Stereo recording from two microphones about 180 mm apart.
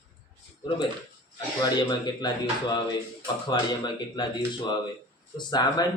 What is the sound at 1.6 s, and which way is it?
Speech, 25° left (ahead or behind).